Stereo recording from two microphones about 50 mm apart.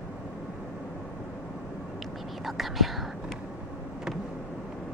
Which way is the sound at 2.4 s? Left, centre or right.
Centre.